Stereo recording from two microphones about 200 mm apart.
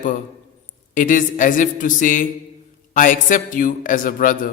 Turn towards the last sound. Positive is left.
turn(degrees=45)  # may be behind; listen again after turning